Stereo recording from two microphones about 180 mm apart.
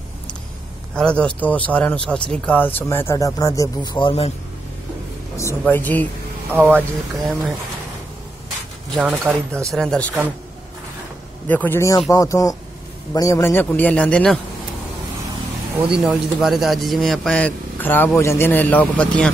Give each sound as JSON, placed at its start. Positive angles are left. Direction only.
{"t": 0.9, "sound": "speech", "side_deg": 5}
{"t": 5.6, "sound": "speech", "side_deg": 10}
{"t": 6.5, "sound": "speech", "side_deg": -10}
{"t": 8.9, "sound": "speech", "side_deg": -5}
{"t": 9.7, "sound": "speech", "side_deg": 5}
{"t": 11.4, "sound": "speech", "side_deg": 10}
{"t": 15.8, "sound": "speech", "side_deg": -5}